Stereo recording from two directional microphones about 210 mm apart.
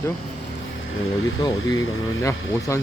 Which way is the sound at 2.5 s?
15° left (ahead or behind).